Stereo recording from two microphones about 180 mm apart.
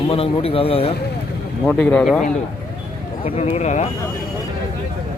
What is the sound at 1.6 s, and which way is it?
Speech, 10° left (ahead or behind).